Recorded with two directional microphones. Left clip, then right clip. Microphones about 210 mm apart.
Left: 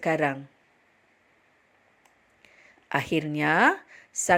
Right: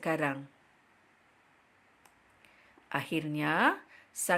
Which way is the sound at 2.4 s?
25° left (ahead or behind).